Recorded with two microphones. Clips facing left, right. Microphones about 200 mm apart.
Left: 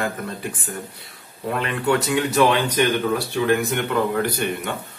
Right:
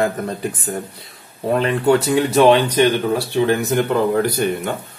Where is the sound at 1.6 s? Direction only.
35° right (ahead or behind).